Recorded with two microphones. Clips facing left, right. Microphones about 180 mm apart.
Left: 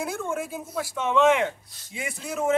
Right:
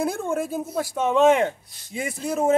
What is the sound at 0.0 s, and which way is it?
A man's voice, 35° right (ahead or behind).